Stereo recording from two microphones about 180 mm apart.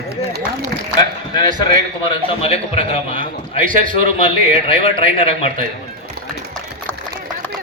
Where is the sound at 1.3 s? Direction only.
25° left (ahead or behind).